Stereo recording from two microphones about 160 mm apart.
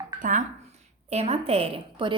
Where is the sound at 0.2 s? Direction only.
50° right (ahead or behind).